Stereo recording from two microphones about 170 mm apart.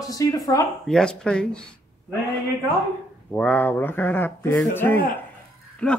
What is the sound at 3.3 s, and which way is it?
Speech, 10° left (ahead or behind).